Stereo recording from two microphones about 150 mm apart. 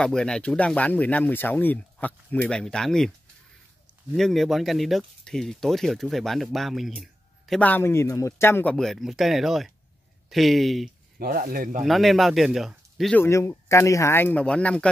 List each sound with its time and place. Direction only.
0.0 s speech: 5° left (ahead or behind)
4.1 s speech: centre (ahead or behind)
8.7 s speech: centre (ahead or behind)
11.1 s speech: 80° right
11.8 s speech: centre (ahead or behind)
13.1 s speech: 15° left (ahead or behind)